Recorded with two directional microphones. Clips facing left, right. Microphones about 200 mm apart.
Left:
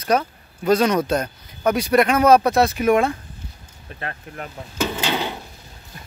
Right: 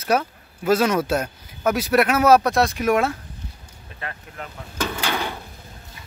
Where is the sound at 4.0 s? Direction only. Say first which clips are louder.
Left 3 dB; 40° left (ahead or behind).